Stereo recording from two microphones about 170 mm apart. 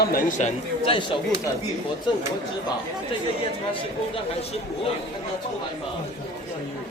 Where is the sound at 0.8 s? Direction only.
30° left (ahead or behind).